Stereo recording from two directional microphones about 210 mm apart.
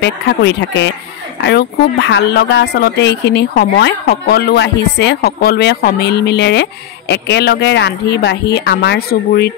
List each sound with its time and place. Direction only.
0.0 s speech: 55° left (ahead or behind)